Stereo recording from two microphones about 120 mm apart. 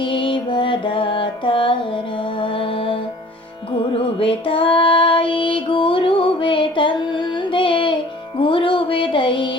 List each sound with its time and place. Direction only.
0.0 s music: 45° left (ahead or behind)
2.4 s mantra: 45° left (ahead or behind)
3.9 s female singing: 50° left (ahead or behind)
8.4 s music: 45° left (ahead or behind)